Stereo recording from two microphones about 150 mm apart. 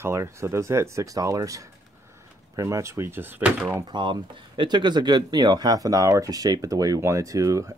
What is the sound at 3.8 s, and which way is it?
Speech, 30° right (ahead or behind).